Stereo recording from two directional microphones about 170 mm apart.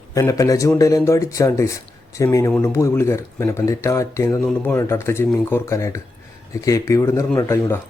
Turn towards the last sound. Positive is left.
turn(degrees=15)  # may be behind; listen again after turning